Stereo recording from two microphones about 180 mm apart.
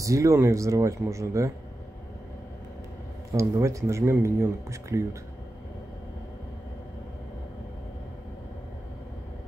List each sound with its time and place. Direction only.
0.0 s speech: 15° right (ahead or behind)
3.3 s speech: 15° right (ahead or behind)